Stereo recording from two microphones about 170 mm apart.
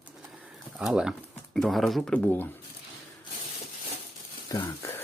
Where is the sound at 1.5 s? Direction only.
Centre (ahead or behind).